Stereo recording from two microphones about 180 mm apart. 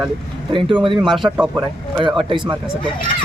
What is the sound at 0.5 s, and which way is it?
Speech, 30° right (ahead or behind).